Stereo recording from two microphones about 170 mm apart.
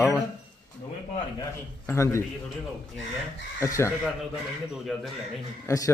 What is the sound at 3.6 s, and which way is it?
Speech, 15° left (ahead or behind).